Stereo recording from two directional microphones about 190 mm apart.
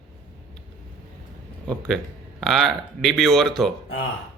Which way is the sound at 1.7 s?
5° left (ahead or behind).